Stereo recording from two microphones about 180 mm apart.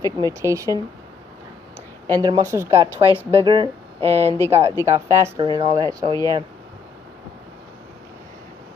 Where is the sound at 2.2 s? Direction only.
20° right (ahead or behind).